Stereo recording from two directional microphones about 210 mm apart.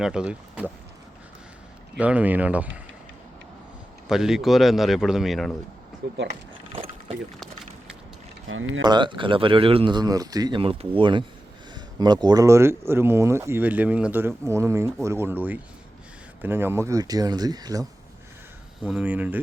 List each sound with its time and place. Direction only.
0.0 s a man's voice: 5° right (ahead or behind)
2.0 s speech: 5° right (ahead or behind)
4.1 s a man's voice: centre (ahead or behind)
6.0 s speech: 55° right (ahead or behind)
6.7 s boat: 30° right (ahead or behind)
8.4 s speech: 70° right (ahead or behind)
8.8 s speech: 20° right (ahead or behind)
18.8 s speech: 5° right (ahead or behind)